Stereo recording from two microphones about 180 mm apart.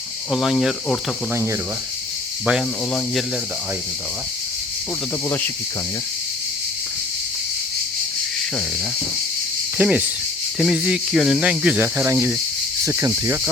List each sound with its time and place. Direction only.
0.3 s speech: centre (ahead or behind)
2.5 s speech: centre (ahead or behind)
9.7 s speech: 10° right (ahead or behind)